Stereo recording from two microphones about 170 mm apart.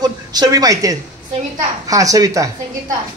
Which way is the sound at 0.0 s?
25° right (ahead or behind).